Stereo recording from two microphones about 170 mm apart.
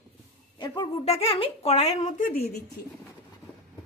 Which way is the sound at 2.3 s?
65° left (ahead or behind).